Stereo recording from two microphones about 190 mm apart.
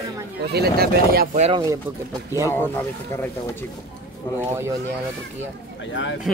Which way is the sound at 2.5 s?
15° left (ahead or behind).